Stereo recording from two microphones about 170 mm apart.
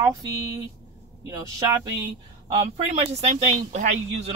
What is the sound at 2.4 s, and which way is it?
Speech, 35° right (ahead or behind).